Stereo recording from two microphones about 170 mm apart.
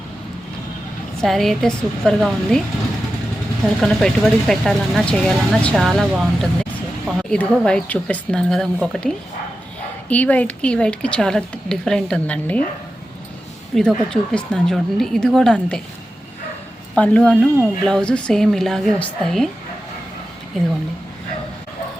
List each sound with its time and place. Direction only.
1.2 s speech: centre (ahead or behind)
3.8 s a woman's voice: centre (ahead or behind)
13.7 s speech: 5° left (ahead or behind)
16.9 s speech: 10° left (ahead or behind)